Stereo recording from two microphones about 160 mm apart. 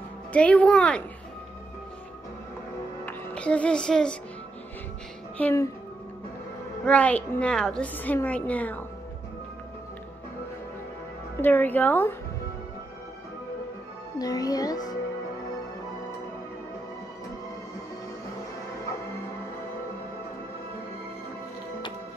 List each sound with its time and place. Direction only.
0.3 s a woman's voice: 10° left (ahead or behind)
3.1 s speech: 5° left (ahead or behind)
5.4 s a woman's voice: 15° left (ahead or behind)
6.8 s a woman's voice: 10° left (ahead or behind)
11.3 s a woman's voice: 10° left (ahead or behind)
14.1 s speech: 25° left (ahead or behind)